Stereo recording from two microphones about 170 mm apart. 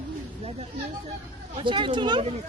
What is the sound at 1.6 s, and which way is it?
Speech, 30° right (ahead or behind).